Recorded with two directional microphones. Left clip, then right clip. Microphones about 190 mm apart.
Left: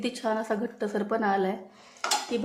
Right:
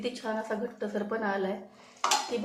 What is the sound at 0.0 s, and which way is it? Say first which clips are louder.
A woman's voice: left 4 dB; 50° left (ahead or behind).